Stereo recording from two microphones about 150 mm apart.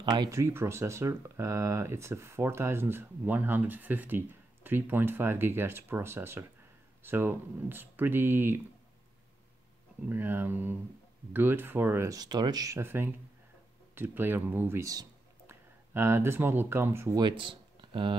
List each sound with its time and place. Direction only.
0.0 s speech: 30° right (ahead or behind); by 8.5 s 15° right (ahead or behind)
10.0 s speech: 15° right (ahead or behind)
17.2 s speech: 35° right (ahead or behind)